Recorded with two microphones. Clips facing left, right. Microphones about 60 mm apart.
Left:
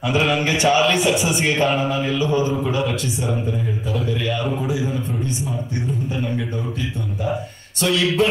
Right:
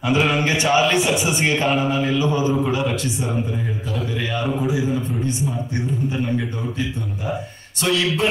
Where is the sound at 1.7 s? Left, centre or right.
Centre.